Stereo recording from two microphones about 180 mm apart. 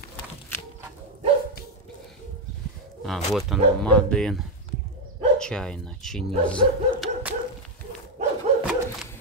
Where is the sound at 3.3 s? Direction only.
Centre (ahead or behind).